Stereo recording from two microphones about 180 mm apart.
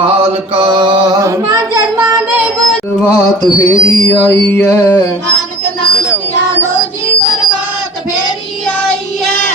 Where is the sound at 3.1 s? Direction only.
20° left (ahead or behind).